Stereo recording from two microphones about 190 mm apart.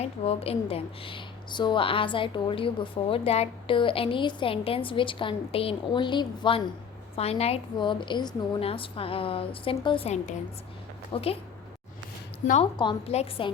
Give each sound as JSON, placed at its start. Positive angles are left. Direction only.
{"t": 0.0, "sound": "a woman's voice", "side_deg": 30}
{"t": 12.7, "sound": "a woman's voice", "side_deg": 25}